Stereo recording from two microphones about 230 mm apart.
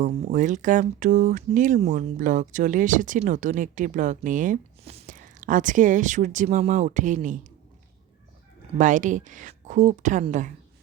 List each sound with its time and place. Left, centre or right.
0.0 s speech: right
8.8 s speech: right